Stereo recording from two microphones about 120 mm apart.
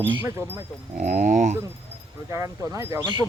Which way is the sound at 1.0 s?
90° right.